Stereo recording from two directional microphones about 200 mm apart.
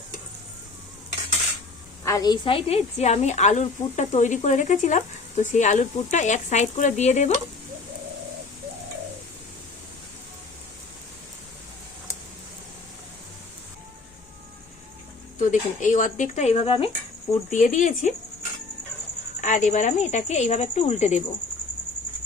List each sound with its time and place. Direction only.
2.0 s a woman's voice: 20° left (ahead or behind); by 7.3 s 35° left (ahead or behind)
15.4 s a woman's voice: 40° left (ahead or behind)
17.5 s a woman's voice: 40° left (ahead or behind)
19.4 s a woman's voice: 40° left (ahead or behind)